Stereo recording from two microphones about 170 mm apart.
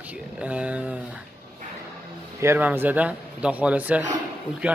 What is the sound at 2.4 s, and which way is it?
Speech, 15° right (ahead or behind).